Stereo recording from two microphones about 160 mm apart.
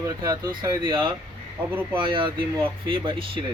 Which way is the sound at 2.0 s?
30° right (ahead or behind).